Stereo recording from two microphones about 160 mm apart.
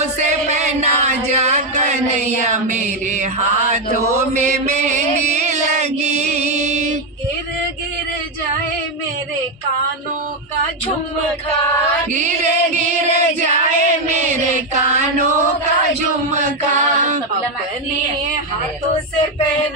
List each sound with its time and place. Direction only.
0.0 s music: 45° right (ahead or behind)
4.1 s a sound: 45° right (ahead or behind)
12.1 s music: 50° right (ahead or behind)